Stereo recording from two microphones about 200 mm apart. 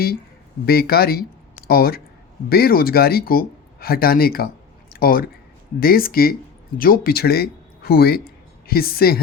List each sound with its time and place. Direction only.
0.6 s speech: 50° left (ahead or behind)